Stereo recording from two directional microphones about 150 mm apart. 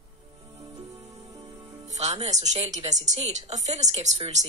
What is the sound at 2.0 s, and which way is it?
Speech, 50° right (ahead or behind).